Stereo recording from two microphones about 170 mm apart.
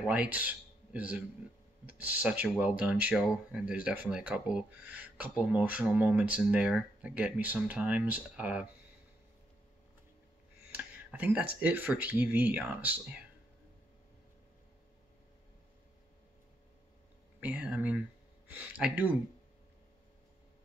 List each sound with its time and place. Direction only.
0.0 s speech: 10° right (ahead or behind)
10.7 s speech: 10° right (ahead or behind)
17.4 s speech: 10° right (ahead or behind)